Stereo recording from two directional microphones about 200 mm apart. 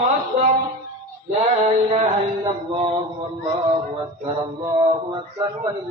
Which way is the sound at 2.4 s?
25° right (ahead or behind).